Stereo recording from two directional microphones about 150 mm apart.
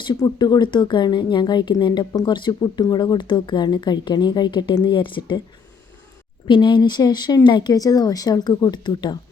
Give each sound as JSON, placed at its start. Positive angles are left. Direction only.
{"t": 0.0, "sound": "speech", "side_deg": 30}
{"t": 6.5, "sound": "speech", "side_deg": 30}